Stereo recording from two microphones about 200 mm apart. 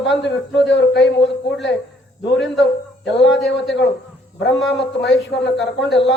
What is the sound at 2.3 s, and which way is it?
A man's voice, 60° left (ahead or behind).